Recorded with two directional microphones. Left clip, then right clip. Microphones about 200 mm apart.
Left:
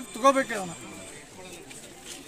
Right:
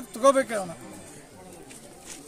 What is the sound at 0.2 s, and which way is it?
Speech, 25° right (ahead or behind).